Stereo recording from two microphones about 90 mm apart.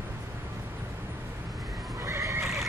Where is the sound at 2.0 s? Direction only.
35° right (ahead or behind).